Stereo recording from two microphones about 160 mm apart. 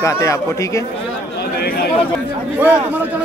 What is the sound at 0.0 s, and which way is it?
Speech, 20° left (ahead or behind).